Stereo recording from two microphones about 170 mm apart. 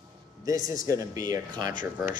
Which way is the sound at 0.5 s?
20° right (ahead or behind).